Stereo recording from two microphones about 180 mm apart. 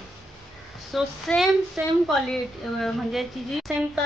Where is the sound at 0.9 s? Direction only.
Centre (ahead or behind).